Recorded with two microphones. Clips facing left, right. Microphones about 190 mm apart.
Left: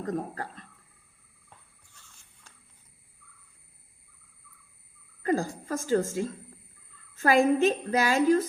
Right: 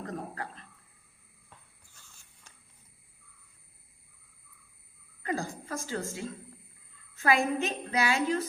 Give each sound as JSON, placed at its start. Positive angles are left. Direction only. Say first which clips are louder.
{"t": 0.0, "sound": "speech", "louder": "left 6 dB", "side_deg": 40}
{"t": 5.2, "sound": "a woman's voice", "louder": "left 6 dB", "side_deg": 45}